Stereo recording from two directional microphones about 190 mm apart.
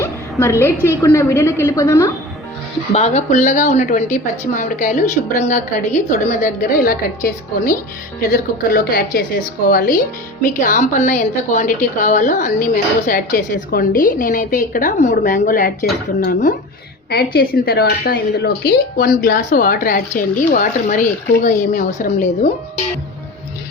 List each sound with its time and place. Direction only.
0.0 s a woman's voice: 15° left (ahead or behind)
2.9 s a woman's voice: 35° left (ahead or behind)